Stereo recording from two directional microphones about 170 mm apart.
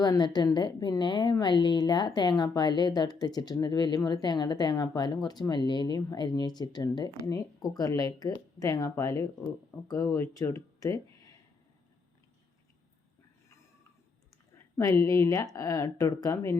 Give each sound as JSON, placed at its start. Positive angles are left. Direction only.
{"t": 0.0, "sound": "a woman's voice", "side_deg": 25}
{"t": 14.8, "sound": "a woman's voice", "side_deg": 20}